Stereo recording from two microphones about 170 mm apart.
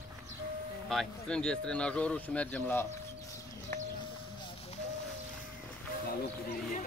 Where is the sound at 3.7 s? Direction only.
15° left (ahead or behind).